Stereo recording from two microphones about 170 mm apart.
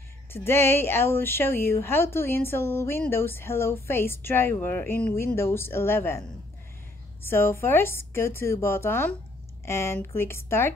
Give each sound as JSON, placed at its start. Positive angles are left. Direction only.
{"t": 0.3, "sound": "speech", "side_deg": 15}
{"t": 7.2, "sound": "speech", "side_deg": 15}